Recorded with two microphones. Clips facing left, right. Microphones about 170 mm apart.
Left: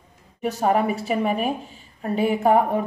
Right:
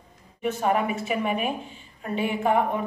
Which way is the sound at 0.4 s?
40° left (ahead or behind).